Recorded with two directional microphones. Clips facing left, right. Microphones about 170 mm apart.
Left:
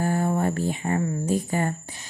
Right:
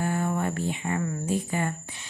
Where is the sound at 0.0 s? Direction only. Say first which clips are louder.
Left 4 dB; 35° left (ahead or behind).